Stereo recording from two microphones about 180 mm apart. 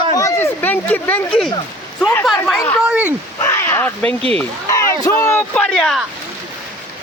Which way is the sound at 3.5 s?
15° left (ahead or behind).